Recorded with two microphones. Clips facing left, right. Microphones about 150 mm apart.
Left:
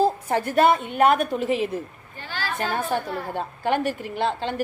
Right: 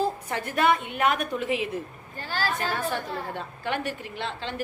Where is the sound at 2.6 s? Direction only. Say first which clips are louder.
Left 3 dB; 45° left (ahead or behind).